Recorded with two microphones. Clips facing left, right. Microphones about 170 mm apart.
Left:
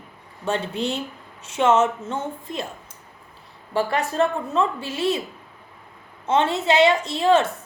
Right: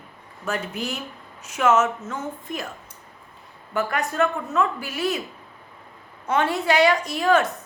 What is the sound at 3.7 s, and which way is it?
A woman's voice, 30° left (ahead or behind).